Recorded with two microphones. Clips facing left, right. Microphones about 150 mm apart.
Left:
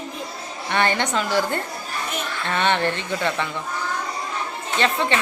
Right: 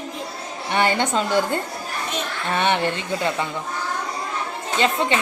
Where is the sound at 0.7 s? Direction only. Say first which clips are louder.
Right 1 dB; 15° right (ahead or behind).